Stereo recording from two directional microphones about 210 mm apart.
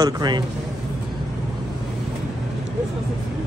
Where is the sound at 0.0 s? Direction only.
20° right (ahead or behind).